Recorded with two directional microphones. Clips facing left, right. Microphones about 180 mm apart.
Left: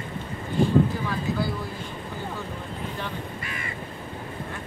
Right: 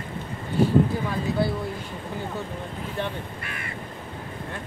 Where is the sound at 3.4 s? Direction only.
55° right (ahead or behind).